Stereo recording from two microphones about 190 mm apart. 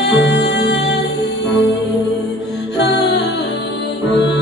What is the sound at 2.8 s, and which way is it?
Music, 65° left (ahead or behind).